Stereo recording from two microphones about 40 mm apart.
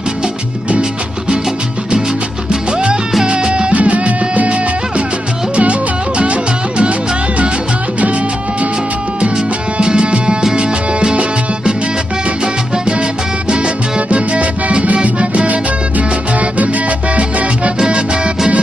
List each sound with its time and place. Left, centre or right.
3.3 s music: right
3.7 s music: right
9.8 s music: right
12.7 s salsa music: right
13.5 s music: right
17.1 s music: right